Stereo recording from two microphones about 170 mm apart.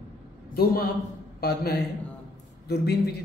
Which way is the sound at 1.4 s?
70° left (ahead or behind).